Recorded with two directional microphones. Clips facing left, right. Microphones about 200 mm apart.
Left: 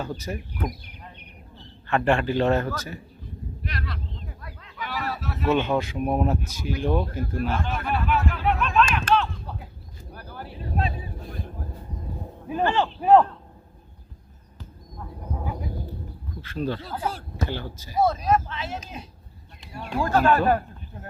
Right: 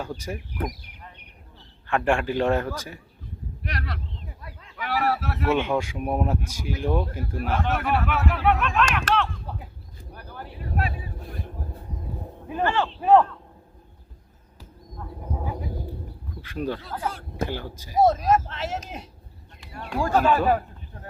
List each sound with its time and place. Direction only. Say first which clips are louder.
0.3 s speech: left 1 dB; 5° right (ahead or behind)
1.9 s speech: left 1 dB; 10° right (ahead or behind)
3.6 s a sound: right 1 dB; 70° right (ahead or behind)
5.5 s speech: left 1 dB; 10° right (ahead or behind)
7.7 s speech: right 1 dB; 75° right (ahead or behind)
10.1 s a sound: left 1 dB; 5° left (ahead or behind)
10.6 s vehicle: left 1 dB; 25° left (ahead or behind)
10.9 s vehicle: left 1 dB; centre (ahead or behind)
12.5 s speech: left 1 dB; 15° left (ahead or behind)
14.6 s bird: even; 5° right (ahead or behind)
16.3 s speech: left 1 dB; 10° right (ahead or behind)
18.0 s speech: right 2 dB; 40° right (ahead or behind)
19.9 s speech: even; 10° right (ahead or behind)